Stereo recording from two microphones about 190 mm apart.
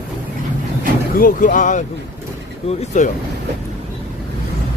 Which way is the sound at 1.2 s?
45° left (ahead or behind).